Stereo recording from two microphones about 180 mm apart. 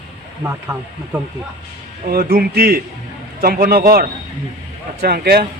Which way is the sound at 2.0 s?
55° right (ahead or behind).